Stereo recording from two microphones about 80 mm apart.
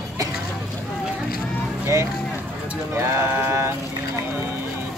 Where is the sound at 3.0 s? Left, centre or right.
Right.